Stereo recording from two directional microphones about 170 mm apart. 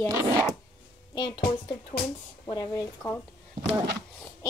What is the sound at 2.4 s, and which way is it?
Speech, 25° left (ahead or behind).